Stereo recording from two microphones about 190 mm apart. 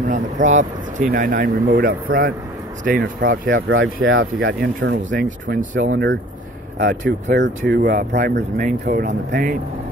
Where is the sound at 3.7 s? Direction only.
90° right.